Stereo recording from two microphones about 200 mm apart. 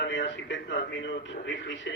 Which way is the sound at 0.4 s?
65° left (ahead or behind).